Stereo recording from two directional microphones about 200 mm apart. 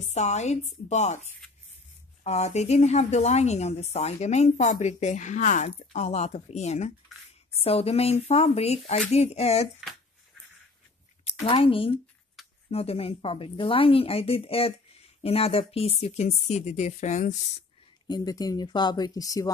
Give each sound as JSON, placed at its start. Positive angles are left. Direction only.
{"t": 0.0, "sound": "speech", "side_deg": 35}
{"t": 9.8, "sound": "a sound", "side_deg": 0}
{"t": 11.2, "sound": "speech", "side_deg": 25}
{"t": 18.0, "sound": "speech", "side_deg": 20}